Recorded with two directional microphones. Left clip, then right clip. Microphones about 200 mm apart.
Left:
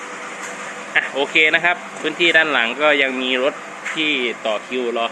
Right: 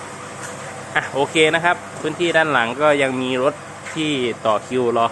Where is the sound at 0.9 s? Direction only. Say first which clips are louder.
Left 1 dB; 20° right (ahead or behind).